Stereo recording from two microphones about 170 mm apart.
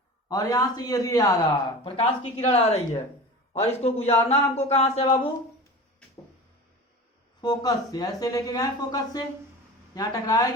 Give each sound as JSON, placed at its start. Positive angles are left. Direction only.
{"t": 0.3, "sound": "speech", "side_deg": 20}
{"t": 2.0, "sound": "speech", "side_deg": 40}
{"t": 7.4, "sound": "speech", "side_deg": 25}